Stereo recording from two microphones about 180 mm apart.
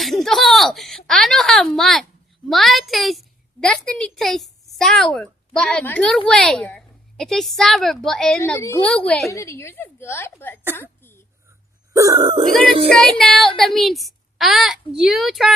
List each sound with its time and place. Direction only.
0.0 s a woman's voice: centre (ahead or behind)
8.4 s a woman's voice: 15° left (ahead or behind)
9.3 s a woman's voice: 15° left (ahead or behind)
10.8 s a sound: 10° left (ahead or behind)
11.9 s speech: 20° right (ahead or behind)
12.9 s a woman's voice: centre (ahead or behind)